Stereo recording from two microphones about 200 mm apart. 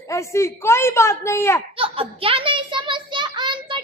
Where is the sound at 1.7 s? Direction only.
30° right (ahead or behind).